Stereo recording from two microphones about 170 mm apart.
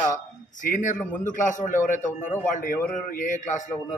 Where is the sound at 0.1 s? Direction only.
50° left (ahead or behind).